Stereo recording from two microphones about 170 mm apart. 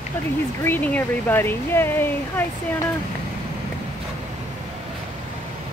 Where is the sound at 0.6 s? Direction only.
10° left (ahead or behind).